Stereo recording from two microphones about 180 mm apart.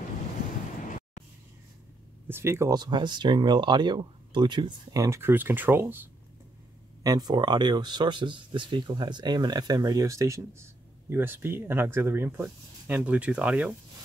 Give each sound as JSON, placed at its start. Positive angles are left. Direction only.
{"t": 2.2, "sound": "speech", "side_deg": -15}